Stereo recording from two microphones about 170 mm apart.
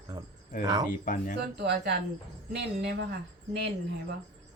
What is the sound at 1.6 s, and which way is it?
Speech, 75° right (ahead or behind).